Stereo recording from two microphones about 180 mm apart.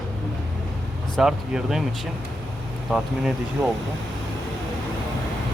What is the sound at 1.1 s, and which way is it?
Speech, 5° right (ahead or behind).